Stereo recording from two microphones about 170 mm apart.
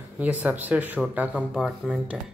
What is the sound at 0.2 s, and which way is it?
Speech, 10° right (ahead or behind).